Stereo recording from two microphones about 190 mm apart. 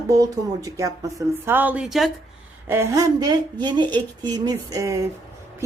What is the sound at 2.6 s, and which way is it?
A woman's voice, 15° right (ahead or behind).